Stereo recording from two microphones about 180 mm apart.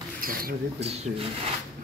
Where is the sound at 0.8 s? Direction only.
35° right (ahead or behind).